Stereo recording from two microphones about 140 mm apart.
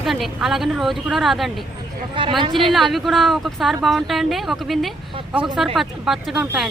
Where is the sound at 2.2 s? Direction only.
35° right (ahead or behind).